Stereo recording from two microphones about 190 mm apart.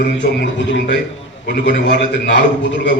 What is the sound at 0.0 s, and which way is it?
A man's voice, 65° left (ahead or behind).